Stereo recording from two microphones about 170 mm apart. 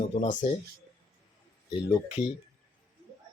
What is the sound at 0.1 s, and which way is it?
Speech, 45° left (ahead or behind).